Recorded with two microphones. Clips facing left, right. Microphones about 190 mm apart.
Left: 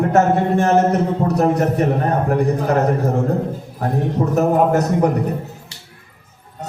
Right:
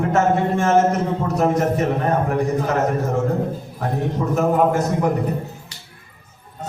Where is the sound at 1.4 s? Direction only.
35° left (ahead or behind).